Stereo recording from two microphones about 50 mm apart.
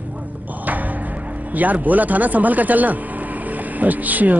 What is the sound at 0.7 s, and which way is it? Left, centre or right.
Music, right.